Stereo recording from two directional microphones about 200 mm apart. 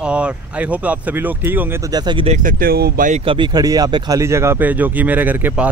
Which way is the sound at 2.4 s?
45° right (ahead or behind).